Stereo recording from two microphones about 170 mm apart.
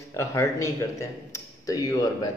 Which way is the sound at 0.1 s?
15° left (ahead or behind).